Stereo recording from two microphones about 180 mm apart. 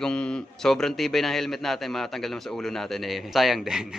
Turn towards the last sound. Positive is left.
turn(degrees=0)  # may be behind; listen again after turning